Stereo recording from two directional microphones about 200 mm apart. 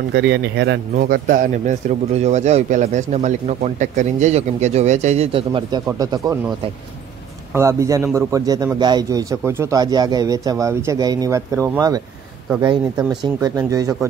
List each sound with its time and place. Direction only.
0.1 s speech: 60° right (ahead or behind)
0.9 s speech: 45° right (ahead or behind); by 6.3 s 20° right (ahead or behind)
7.5 s a man's voice: 15° right (ahead or behind)